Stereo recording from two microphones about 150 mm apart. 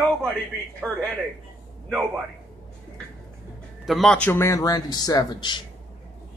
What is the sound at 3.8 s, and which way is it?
A man's voice, centre (ahead or behind).